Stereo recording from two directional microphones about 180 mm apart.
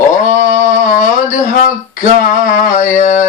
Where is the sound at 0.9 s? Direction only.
45° left (ahead or behind).